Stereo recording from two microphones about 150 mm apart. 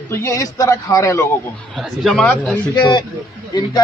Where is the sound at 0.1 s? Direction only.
20° left (ahead or behind).